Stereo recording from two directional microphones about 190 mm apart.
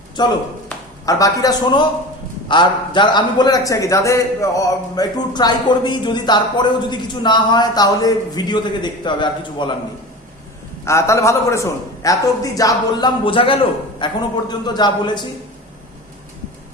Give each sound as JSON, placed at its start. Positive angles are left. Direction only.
{"t": 0.2, "sound": "a man's voice", "side_deg": 20}
{"t": 10.8, "sound": "a man's voice", "side_deg": 15}